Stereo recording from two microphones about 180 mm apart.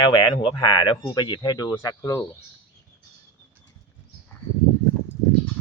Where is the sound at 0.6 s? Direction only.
25° left (ahead or behind).